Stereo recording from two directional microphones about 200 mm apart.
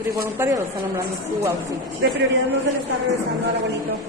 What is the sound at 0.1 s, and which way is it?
A man's voice, 15° right (ahead or behind).